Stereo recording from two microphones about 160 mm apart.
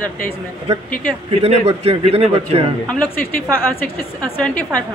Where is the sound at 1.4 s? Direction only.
40° right (ahead or behind).